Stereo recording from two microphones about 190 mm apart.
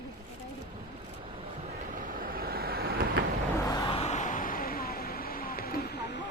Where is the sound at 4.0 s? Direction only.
35° left (ahead or behind); by 6.2 s 55° left (ahead or behind).